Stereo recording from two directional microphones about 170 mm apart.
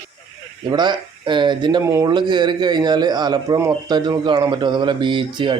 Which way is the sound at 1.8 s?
15° right (ahead or behind).